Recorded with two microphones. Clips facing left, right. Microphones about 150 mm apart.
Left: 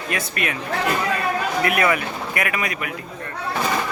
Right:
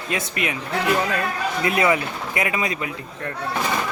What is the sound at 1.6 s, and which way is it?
Speech, 20° right (ahead or behind).